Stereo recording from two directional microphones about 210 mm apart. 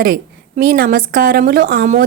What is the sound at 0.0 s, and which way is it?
A woman's voice, 45° right (ahead or behind).